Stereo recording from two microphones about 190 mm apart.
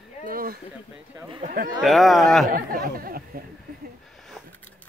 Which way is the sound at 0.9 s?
10° right (ahead or behind).